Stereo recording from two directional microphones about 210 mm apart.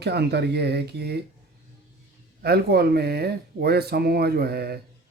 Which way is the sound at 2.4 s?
50° right (ahead or behind).